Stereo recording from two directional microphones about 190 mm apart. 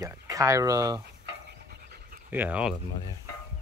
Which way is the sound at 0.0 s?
15° right (ahead or behind).